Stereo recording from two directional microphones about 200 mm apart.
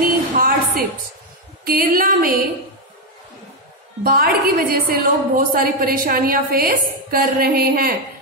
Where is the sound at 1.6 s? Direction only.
45° right (ahead or behind).